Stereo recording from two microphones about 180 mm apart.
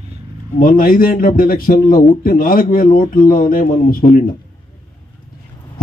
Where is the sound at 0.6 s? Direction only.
50° left (ahead or behind).